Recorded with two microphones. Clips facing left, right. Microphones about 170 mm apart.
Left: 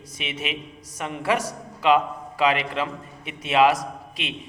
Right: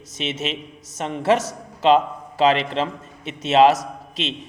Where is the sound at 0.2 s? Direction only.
25° right (ahead or behind).